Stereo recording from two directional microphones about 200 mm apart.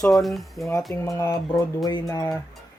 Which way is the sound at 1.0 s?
15° left (ahead or behind).